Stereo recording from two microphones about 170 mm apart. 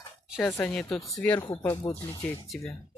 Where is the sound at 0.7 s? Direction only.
5° left (ahead or behind); by 2.3 s 20° left (ahead or behind).